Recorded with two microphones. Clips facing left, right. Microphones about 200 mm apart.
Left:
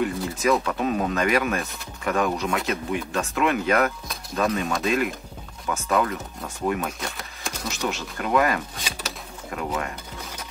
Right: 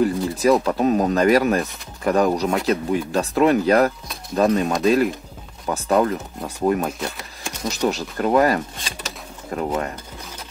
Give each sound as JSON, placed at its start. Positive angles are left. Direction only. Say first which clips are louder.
{"t": 0.0, "sound": "speech", "louder": "right 5 dB", "side_deg": -35}